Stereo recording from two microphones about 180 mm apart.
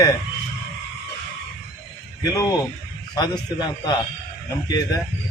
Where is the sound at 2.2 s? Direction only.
20° left (ahead or behind).